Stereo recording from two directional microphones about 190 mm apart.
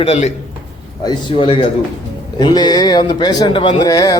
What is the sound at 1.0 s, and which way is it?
A man's voice, 25° left (ahead or behind).